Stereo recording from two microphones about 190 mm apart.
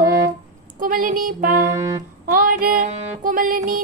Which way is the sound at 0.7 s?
45° right (ahead or behind).